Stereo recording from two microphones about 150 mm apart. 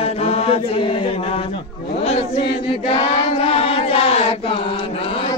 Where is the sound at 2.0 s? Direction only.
40° left (ahead or behind).